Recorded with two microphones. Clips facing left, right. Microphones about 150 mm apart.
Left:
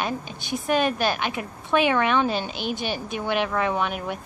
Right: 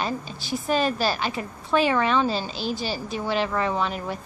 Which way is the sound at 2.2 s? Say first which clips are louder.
Even; 60° left (ahead or behind).